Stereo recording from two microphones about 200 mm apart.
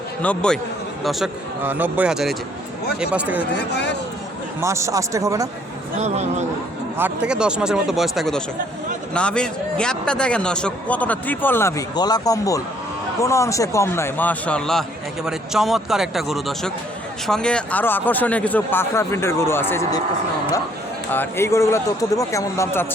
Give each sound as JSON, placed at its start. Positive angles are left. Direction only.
{"t": 0.2, "sound": "a man's voice", "side_deg": 5}
{"t": 1.0, "sound": "a man's voice", "side_deg": -5}
{"t": 4.6, "sound": "speech", "side_deg": -15}
{"t": 6.0, "sound": "speech", "side_deg": -35}
{"t": 6.9, "sound": "a man's voice", "side_deg": -10}
{"t": 21.1, "sound": "a man's voice", "side_deg": 10}